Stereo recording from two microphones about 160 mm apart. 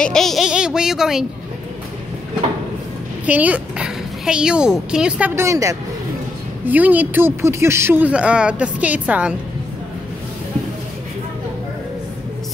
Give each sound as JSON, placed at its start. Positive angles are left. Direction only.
{"t": 0.0, "sound": "speech", "side_deg": 5}
{"t": 3.3, "sound": "speech", "side_deg": -10}
{"t": 5.3, "sound": "speech", "side_deg": -20}